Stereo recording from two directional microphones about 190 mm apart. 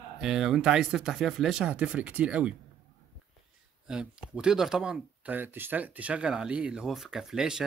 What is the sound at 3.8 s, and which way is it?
Speech, 5° right (ahead or behind).